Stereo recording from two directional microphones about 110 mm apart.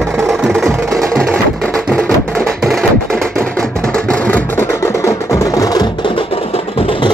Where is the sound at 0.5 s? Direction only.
Centre (ahead or behind).